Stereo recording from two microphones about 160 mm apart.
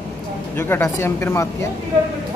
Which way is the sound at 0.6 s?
15° left (ahead or behind).